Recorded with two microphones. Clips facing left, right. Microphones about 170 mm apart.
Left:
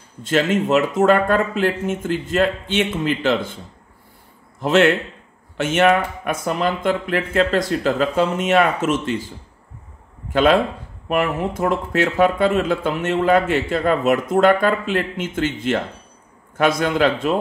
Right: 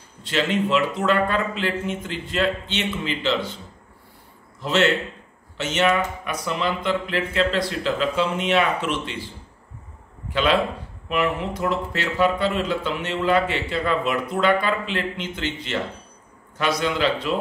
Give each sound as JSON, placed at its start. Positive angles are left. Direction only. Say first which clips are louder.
{"t": 0.2, "sound": "speech", "louder": "left 4 dB", "side_deg": 45}
{"t": 4.6, "sound": "speech", "louder": "left 5 dB", "side_deg": 55}
{"t": 10.3, "sound": "speech", "louder": "left 5 dB", "side_deg": 50}